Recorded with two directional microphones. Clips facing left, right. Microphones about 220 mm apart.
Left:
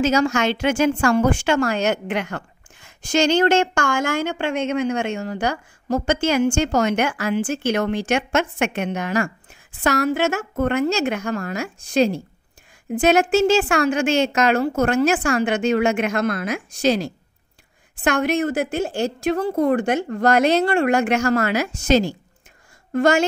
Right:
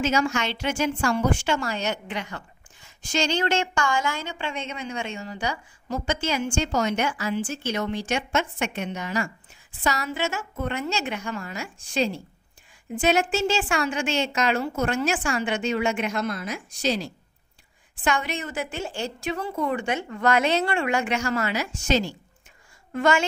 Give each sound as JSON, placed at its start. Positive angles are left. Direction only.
{"t": 0.0, "sound": "speech", "side_deg": 40}
{"t": 7.6, "sound": "speech", "side_deg": 55}
{"t": 20.0, "sound": "a woman's voice", "side_deg": 40}